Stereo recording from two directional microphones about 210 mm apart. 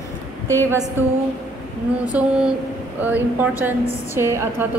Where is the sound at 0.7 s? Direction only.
10° right (ahead or behind).